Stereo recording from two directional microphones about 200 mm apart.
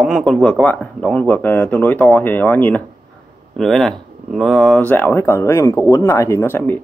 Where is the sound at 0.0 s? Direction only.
Centre (ahead or behind).